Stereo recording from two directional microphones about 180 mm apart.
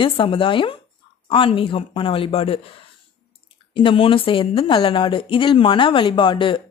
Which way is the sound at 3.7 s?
30° left (ahead or behind).